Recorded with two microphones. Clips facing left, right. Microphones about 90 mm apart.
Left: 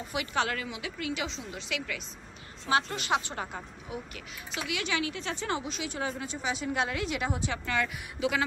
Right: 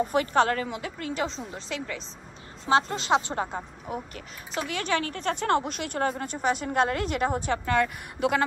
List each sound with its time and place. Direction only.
0.0 s a woman's voice: 40° right (ahead or behind)
3.8 s a woman's voice: 45° right (ahead or behind)